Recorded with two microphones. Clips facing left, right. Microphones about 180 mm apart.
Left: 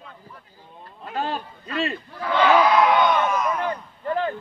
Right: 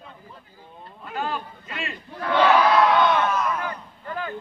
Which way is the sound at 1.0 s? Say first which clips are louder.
Left 2 dB; 30° left (ahead or behind).